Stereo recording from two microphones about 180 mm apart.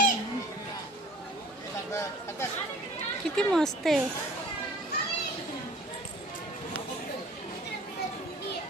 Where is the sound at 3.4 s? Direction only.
5° left (ahead or behind).